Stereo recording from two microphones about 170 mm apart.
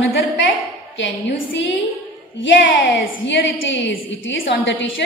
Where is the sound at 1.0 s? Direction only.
90° left.